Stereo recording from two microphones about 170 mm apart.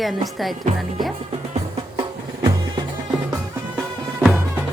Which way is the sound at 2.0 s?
30° right (ahead or behind).